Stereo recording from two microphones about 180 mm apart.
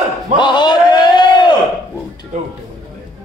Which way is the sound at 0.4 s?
25° left (ahead or behind).